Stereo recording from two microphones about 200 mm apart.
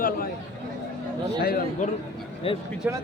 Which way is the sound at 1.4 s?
50° left (ahead or behind).